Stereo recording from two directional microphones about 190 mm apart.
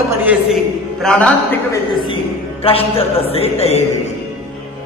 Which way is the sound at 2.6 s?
30° left (ahead or behind).